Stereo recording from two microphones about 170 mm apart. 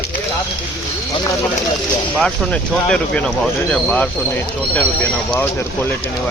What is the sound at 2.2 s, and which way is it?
Speech, 5° left (ahead or behind).